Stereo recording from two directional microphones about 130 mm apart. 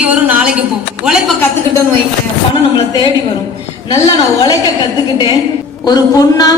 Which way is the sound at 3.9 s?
35° left (ahead or behind).